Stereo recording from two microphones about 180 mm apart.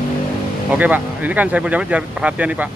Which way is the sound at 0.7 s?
10° right (ahead or behind).